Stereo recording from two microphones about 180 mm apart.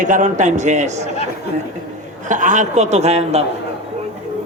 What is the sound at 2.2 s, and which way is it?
A man's voice, 45° right (ahead or behind).